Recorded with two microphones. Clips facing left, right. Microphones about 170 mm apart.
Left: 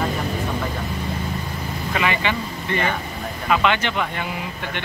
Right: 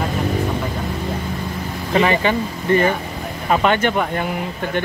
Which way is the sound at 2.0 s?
40° right (ahead or behind).